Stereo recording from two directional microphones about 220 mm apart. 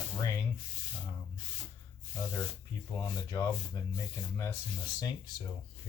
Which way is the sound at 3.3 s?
15° left (ahead or behind).